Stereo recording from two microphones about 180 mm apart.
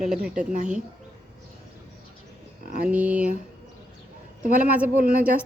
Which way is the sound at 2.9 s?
5° right (ahead or behind).